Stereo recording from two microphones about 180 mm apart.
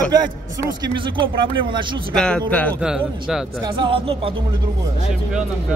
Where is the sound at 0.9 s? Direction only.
30° right (ahead or behind).